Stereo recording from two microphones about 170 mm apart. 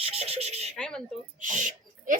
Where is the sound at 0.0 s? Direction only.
35° right (ahead or behind).